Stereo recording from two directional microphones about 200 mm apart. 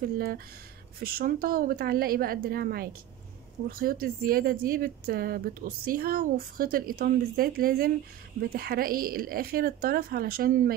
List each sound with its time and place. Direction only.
0.9 s speech: 45° right (ahead or behind)